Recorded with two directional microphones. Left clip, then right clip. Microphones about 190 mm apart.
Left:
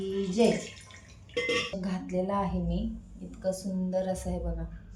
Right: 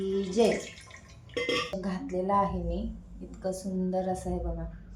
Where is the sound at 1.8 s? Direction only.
15° left (ahead or behind).